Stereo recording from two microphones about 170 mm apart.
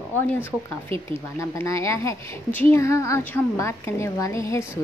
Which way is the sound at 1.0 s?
15° left (ahead or behind).